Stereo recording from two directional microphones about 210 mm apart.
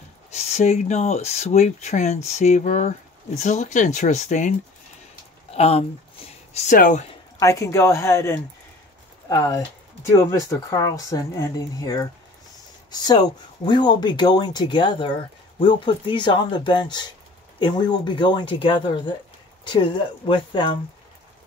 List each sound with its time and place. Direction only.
0.4 s speech: 30° left (ahead or behind)
7.3 s speech: 15° left (ahead or behind)